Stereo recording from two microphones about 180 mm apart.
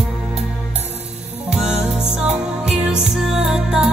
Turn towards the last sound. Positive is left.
turn(degrees=-5)  # may be behind; listen again after turning